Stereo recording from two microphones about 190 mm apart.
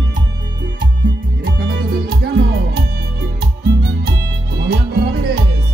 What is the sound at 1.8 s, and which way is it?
Music, 55° right (ahead or behind).